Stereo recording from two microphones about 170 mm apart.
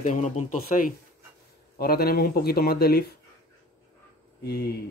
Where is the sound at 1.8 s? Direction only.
65° left (ahead or behind).